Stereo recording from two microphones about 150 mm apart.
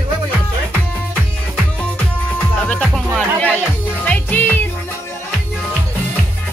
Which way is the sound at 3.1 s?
10° left (ahead or behind).